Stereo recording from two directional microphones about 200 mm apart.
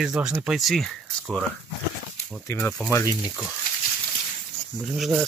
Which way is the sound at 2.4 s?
10° left (ahead or behind).